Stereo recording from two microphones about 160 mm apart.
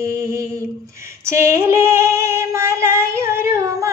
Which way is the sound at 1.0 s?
15° right (ahead or behind).